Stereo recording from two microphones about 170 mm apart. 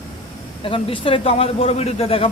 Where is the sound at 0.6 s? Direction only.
30° left (ahead or behind).